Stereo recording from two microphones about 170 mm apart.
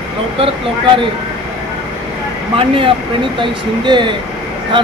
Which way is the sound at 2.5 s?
30° right (ahead or behind).